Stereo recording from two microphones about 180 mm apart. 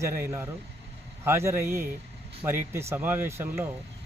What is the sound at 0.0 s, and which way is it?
Speech, 15° right (ahead or behind).